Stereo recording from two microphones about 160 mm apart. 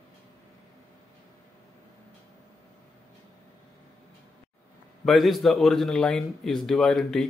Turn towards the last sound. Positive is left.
turn(degrees=0)  # may be behind; listen again after turning